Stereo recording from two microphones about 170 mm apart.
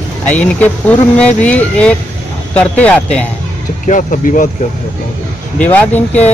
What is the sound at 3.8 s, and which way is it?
Speech, 50° left (ahead or behind).